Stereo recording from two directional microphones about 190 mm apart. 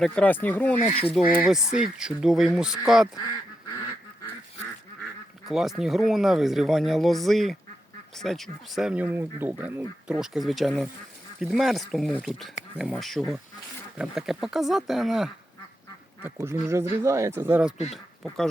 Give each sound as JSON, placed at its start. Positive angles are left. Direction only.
{"t": 0.0, "sound": "speech", "side_deg": 5}
{"t": 0.8, "sound": "speech", "side_deg": 30}
{"t": 1.1, "sound": "speech", "side_deg": -5}
{"t": 5.5, "sound": "speech", "side_deg": 0}
{"t": 16.2, "sound": "speech", "side_deg": -15}